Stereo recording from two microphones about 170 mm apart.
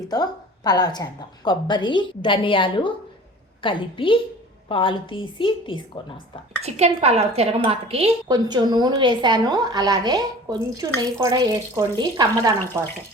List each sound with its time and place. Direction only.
0.1 s a woman's voice: 25° left (ahead or behind)
6.6 s a woman's voice: 40° right (ahead or behind); by 12.5 s 25° right (ahead or behind)